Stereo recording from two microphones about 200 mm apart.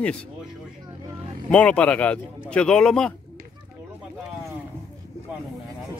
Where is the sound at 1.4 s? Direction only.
5° left (ahead or behind).